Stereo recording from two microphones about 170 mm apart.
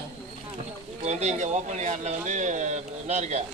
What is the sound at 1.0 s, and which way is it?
Speech, 40° right (ahead or behind).